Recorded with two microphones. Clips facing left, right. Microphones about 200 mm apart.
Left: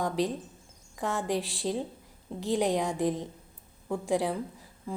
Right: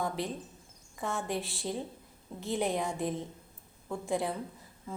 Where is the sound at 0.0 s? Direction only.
15° left (ahead or behind).